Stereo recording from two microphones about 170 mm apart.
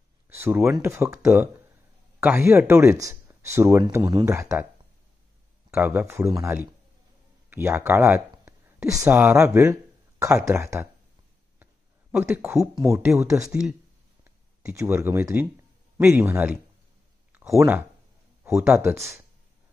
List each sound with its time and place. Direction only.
0.3 s speech: 15° right (ahead or behind)
5.7 s speech: 10° right (ahead or behind)
11.6 s a sound: 10° right (ahead or behind)
12.8 s speech: 15° right (ahead or behind)
13.4 s speech: 5° right (ahead or behind)